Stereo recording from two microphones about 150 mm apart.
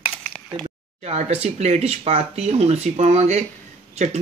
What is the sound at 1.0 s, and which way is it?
Speech, 45° right (ahead or behind).